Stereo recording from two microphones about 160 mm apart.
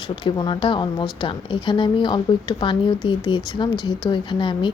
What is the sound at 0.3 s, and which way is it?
A woman's voice, 30° left (ahead or behind).